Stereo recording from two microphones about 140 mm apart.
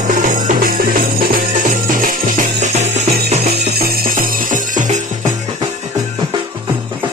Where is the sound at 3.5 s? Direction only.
90° right; by 5.3 s 65° right (ahead or behind).